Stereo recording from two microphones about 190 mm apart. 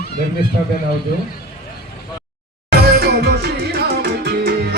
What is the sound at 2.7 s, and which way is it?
Music, 55° right (ahead or behind).